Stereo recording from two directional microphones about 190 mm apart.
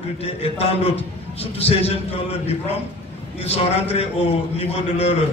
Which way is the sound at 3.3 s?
30° left (ahead or behind).